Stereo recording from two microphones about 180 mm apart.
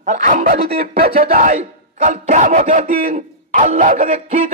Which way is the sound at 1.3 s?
50° right (ahead or behind).